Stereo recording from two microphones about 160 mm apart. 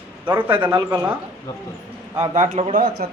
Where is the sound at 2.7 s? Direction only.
65° right (ahead or behind).